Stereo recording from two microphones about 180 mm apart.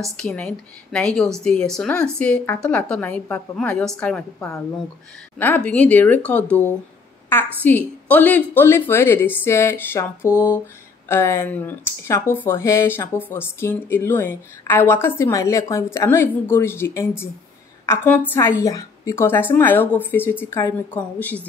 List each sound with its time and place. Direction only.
0.2 s a woman's voice: 5° left (ahead or behind)
4.4 s a woman's voice: 15° left (ahead or behind)